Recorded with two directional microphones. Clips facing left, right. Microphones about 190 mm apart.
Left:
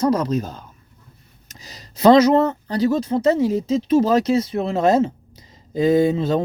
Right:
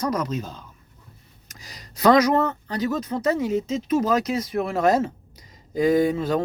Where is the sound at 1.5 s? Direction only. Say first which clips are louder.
Left 2 dB; 25° left (ahead or behind).